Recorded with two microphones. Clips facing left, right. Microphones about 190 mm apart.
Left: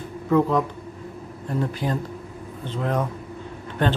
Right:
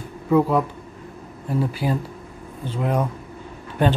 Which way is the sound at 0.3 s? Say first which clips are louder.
Right 2 dB; 10° right (ahead or behind).